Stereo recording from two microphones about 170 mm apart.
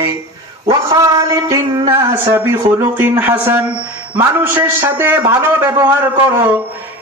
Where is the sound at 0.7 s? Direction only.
20° right (ahead or behind).